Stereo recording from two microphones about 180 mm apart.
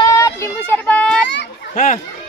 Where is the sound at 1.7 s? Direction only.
45° left (ahead or behind).